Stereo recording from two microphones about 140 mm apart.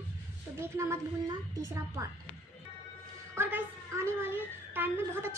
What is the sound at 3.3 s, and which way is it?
A woman's voice, 15° right (ahead or behind).